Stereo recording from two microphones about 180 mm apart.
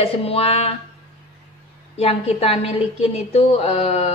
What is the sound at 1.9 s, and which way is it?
A woman's voice, 35° left (ahead or behind).